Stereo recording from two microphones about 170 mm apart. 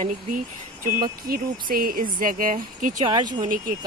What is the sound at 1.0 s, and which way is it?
Speech, 60° right (ahead or behind).